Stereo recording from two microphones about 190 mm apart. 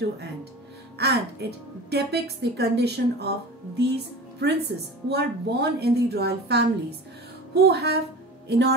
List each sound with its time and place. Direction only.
0.9 s a woman's voice: 60° right (ahead or behind)